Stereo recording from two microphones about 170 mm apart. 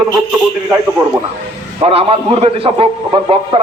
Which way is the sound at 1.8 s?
35° right (ahead or behind).